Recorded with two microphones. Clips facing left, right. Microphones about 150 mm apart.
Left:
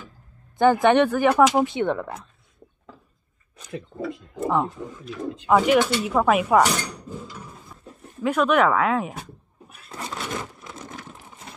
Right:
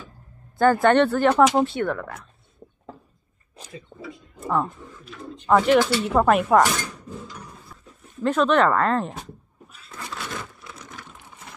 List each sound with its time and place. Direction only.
0.6 s speech: 20° left (ahead or behind)
2.9 s a sound: 90° left
3.7 s speech: 65° left (ahead or behind)
4.5 s speech: 15° left (ahead or behind)
9.8 s scrape: 30° left (ahead or behind)
10.9 s vehicle: 40° left (ahead or behind)